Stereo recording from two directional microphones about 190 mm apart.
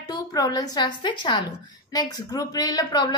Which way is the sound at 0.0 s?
20° left (ahead or behind).